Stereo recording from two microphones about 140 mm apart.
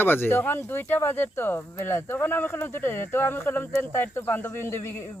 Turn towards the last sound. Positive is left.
turn(degrees=20)  # may be behind; listen again after turning